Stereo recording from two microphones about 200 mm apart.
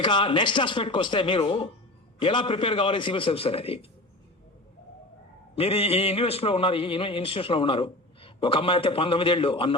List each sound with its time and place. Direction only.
0.0 s a man's voice: 25° left (ahead or behind)
5.5 s a man's voice: 30° left (ahead or behind)